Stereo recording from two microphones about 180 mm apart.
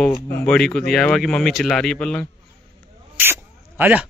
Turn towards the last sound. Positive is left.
turn(degrees=-10)  # may be behind; listen again after turning